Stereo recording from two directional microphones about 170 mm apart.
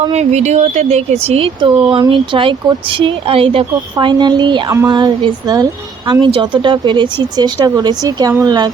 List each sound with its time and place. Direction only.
0.1 s speech: 40° right (ahead or behind); by 8.7 s 25° right (ahead or behind)